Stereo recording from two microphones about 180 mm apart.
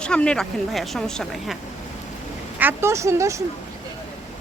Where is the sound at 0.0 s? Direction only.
5° left (ahead or behind).